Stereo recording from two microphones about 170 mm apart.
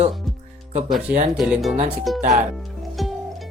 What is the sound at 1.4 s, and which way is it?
Speech, centre (ahead or behind).